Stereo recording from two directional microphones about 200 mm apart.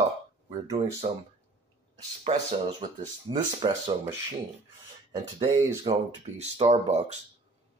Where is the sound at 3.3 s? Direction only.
25° right (ahead or behind).